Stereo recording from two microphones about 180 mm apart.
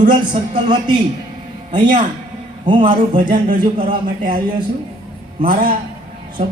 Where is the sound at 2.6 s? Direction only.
25° right (ahead or behind).